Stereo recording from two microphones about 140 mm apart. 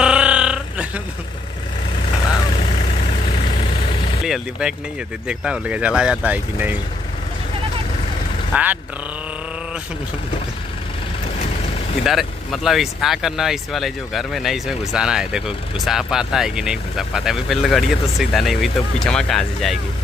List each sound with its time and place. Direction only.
0.0 s a sound: 5° right (ahead or behind)
3.3 s vehicle: 45° left (ahead or behind)
4.2 s speech: 5° right (ahead or behind)
8.5 s speech: 10° right (ahead or behind)
12.0 s speech: centre (ahead or behind)